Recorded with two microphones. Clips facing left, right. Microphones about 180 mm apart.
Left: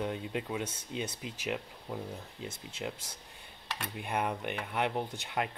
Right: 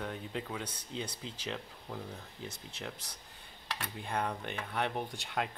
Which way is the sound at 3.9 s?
15° left (ahead or behind).